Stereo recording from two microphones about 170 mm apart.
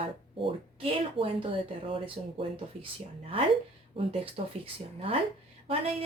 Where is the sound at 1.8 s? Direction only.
30° right (ahead or behind).